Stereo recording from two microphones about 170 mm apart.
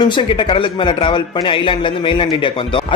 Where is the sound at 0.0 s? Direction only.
30° left (ahead or behind).